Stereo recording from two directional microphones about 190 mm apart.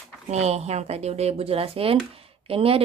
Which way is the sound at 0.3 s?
35° right (ahead or behind).